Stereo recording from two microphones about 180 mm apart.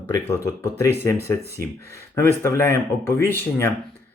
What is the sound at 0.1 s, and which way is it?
Speech, 15° left (ahead or behind).